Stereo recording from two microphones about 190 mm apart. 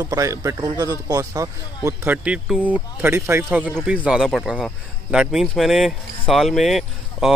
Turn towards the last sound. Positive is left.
turn(degrees=0)  # may be behind; listen again after turning